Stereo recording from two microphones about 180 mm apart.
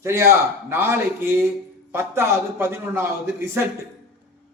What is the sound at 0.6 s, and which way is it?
A man's voice, 15° right (ahead or behind).